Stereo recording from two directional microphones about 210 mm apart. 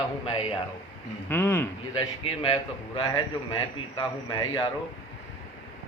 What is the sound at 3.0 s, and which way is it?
A man's voice, 25° left (ahead or behind).